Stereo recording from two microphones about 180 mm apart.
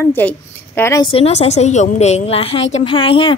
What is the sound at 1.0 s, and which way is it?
A woman's voice, 35° left (ahead or behind).